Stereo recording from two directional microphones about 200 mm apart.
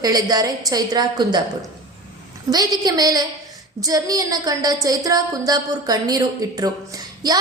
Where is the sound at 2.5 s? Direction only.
20° right (ahead or behind).